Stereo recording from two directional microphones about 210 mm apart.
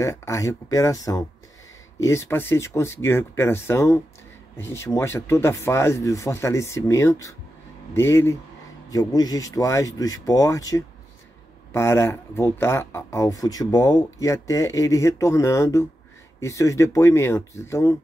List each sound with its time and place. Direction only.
0.0 s speech: 15° left (ahead or behind)